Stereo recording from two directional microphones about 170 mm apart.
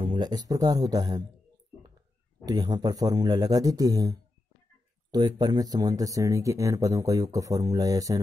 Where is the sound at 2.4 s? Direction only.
25° right (ahead or behind).